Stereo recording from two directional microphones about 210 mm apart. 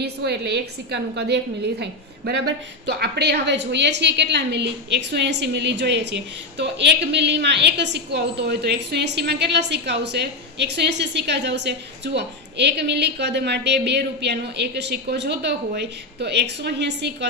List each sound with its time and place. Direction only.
0.0 s a woman's voice: 55° right (ahead or behind)